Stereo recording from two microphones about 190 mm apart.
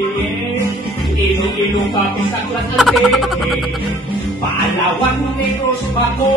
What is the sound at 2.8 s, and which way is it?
Music, centre (ahead or behind).